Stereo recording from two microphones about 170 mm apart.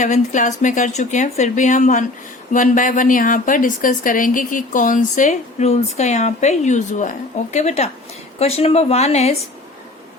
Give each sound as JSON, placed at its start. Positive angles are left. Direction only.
{"t": 0.0, "sound": "a woman's voice", "side_deg": 45}